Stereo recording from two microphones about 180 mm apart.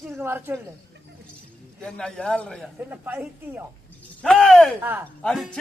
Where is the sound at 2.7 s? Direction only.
10° right (ahead or behind).